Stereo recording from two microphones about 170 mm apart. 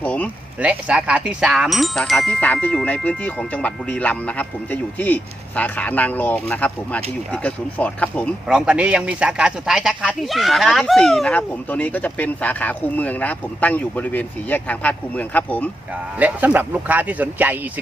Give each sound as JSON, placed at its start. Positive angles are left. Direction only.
{"t": 0.0, "sound": "speech", "side_deg": 10}
{"t": 0.6, "sound": "music", "side_deg": -5}
{"t": 8.4, "sound": "music", "side_deg": -5}
{"t": 16.1, "sound": "speech", "side_deg": -10}